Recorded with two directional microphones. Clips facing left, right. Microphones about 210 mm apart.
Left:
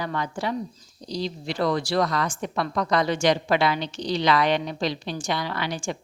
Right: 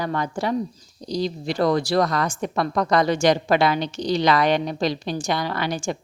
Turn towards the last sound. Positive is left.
turn(degrees=-40)  # may be behind; listen again after turning